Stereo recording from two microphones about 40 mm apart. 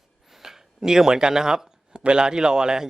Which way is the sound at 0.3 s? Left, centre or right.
Centre.